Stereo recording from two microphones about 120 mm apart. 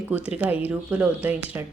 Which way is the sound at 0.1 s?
15° right (ahead or behind).